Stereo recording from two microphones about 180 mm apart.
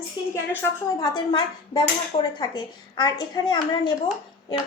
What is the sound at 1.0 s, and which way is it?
A woman's voice, 25° left (ahead or behind).